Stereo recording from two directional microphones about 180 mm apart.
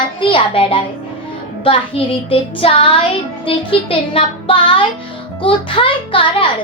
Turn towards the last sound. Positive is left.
turn(degrees=30)  # may be behind; listen again after turning